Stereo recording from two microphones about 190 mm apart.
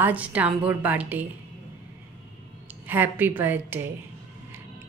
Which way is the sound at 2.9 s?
10° right (ahead or behind).